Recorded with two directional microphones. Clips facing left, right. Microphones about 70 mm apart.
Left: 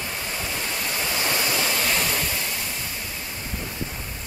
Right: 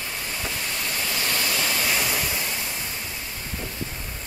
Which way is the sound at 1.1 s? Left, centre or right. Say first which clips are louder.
Left 2 dB; centre.